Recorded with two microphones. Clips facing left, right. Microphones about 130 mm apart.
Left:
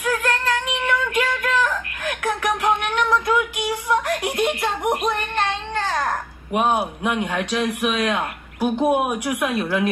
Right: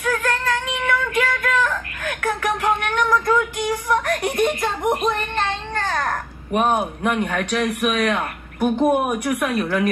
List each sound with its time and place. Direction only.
0.0 s female singing: 5° left (ahead or behind)
5.9 s a sound: 15° left (ahead or behind)
6.6 s speech: 10° left (ahead or behind)
7.3 s speech: 25° left (ahead or behind)
8.5 s speech: 5° left (ahead or behind)
9.5 s speech: 25° left (ahead or behind)